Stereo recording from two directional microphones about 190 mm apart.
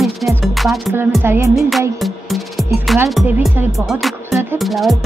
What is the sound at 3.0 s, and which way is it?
Speech, centre (ahead or behind).